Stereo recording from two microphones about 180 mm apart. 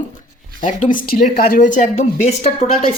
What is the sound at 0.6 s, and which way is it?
Speech, 45° left (ahead or behind).